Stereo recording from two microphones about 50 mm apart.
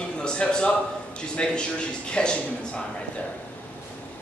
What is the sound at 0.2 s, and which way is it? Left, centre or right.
A man's voice, centre.